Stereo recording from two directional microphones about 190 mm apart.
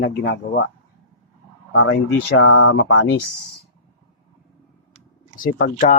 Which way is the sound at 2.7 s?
65° left (ahead or behind).